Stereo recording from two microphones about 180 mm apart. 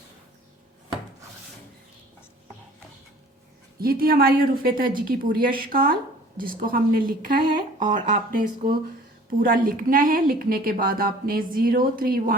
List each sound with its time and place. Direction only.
3.8 s a woman's voice: 55° right (ahead or behind)